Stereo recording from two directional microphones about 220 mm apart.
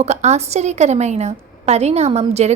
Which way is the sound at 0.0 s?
30° right (ahead or behind).